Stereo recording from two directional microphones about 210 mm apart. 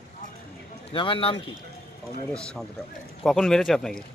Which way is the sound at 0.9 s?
25° left (ahead or behind).